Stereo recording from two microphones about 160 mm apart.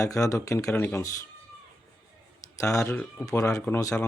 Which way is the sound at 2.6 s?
20° left (ahead or behind).